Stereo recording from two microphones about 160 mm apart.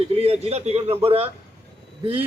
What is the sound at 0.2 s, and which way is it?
Speech, 40° right (ahead or behind).